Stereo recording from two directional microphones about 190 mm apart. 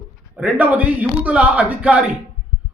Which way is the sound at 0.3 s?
5° right (ahead or behind).